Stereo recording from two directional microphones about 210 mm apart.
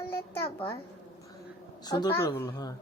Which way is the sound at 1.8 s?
20° left (ahead or behind).